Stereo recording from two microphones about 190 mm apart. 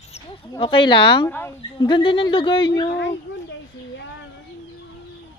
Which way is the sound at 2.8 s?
60° left (ahead or behind).